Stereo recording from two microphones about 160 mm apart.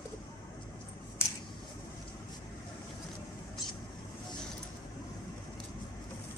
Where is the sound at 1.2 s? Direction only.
15° left (ahead or behind).